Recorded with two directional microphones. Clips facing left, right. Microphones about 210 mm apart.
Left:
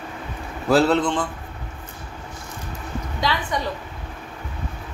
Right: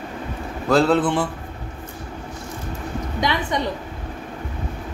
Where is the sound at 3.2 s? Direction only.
20° right (ahead or behind).